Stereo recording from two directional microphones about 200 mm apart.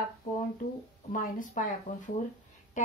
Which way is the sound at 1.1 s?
40° left (ahead or behind).